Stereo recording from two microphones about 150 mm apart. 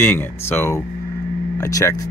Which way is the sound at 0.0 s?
15° left (ahead or behind).